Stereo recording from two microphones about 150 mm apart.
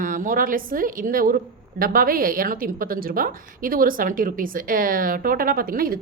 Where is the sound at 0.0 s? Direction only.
65° right (ahead or behind).